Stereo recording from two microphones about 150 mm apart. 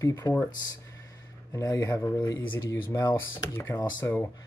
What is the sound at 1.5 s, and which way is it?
Speech, 20° left (ahead or behind).